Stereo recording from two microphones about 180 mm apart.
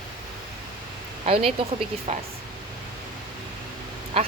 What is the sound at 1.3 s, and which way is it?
Speech, 30° right (ahead or behind).